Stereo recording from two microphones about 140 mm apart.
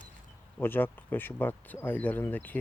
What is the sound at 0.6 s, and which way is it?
Speech, 15° left (ahead or behind).